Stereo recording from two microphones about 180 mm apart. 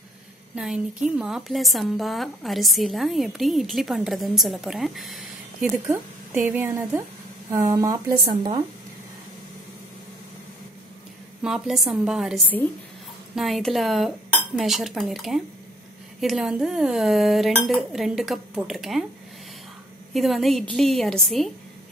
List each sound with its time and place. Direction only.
0.6 s a woman's voice: 5° right (ahead or behind)
5.9 s speech: 10° right (ahead or behind)
8.3 s speech: 35° right (ahead or behind)
11.4 s a woman's voice: centre (ahead or behind)
20.2 s a woman's voice: centre (ahead or behind)